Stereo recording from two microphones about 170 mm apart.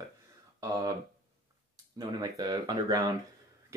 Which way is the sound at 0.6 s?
20° right (ahead or behind).